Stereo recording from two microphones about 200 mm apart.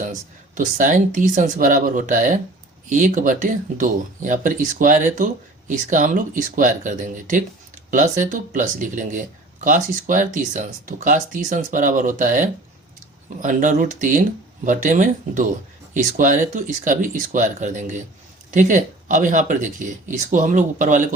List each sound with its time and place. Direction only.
0.0 s speech: 40° right (ahead or behind)